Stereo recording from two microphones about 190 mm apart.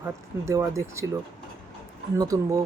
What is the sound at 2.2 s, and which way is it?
Speech, 15° right (ahead or behind).